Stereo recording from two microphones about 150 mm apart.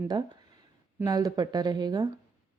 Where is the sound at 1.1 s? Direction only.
25° right (ahead or behind).